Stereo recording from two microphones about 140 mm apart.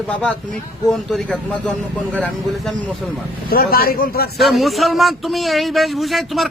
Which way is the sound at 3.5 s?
90° left.